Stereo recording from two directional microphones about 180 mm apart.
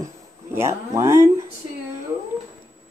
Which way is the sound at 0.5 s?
15° right (ahead or behind).